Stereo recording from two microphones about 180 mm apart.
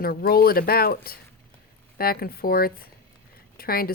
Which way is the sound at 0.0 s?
55° left (ahead or behind).